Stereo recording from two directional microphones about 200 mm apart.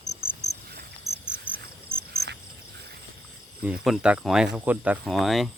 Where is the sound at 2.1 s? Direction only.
55° right (ahead or behind).